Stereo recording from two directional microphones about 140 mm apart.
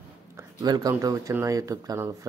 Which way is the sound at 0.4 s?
25° right (ahead or behind).